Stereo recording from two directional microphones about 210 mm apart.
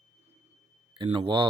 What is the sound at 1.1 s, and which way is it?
Speech, 25° right (ahead or behind).